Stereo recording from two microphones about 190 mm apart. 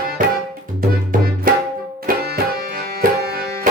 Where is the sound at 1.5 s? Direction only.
50° right (ahead or behind).